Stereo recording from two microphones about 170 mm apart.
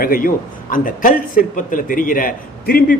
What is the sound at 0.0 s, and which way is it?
A man's voice, 60° left (ahead or behind).